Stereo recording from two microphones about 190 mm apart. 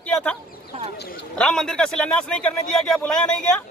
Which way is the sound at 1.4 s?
5° left (ahead or behind).